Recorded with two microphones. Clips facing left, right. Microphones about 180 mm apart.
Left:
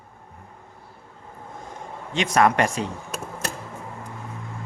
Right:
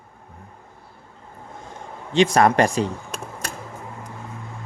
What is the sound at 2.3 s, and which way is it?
Speech, 35° right (ahead or behind).